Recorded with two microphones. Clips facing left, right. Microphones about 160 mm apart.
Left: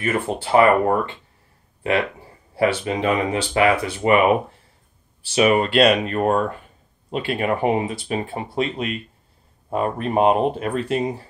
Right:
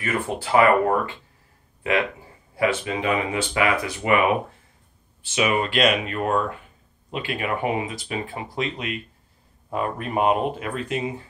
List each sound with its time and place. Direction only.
0.0 s speech: 30° left (ahead or behind)
2.5 s speech: 35° left (ahead or behind)